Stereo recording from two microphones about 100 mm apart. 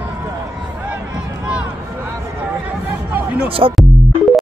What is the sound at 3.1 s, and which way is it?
Basketball bounce, 15° right (ahead or behind).